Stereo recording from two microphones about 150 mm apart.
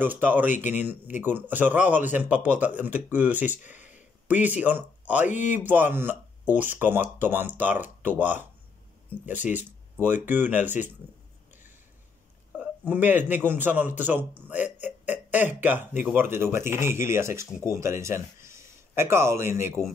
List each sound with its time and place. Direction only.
0.0 s speech: 10° right (ahead or behind)
12.5 s speech: 10° right (ahead or behind)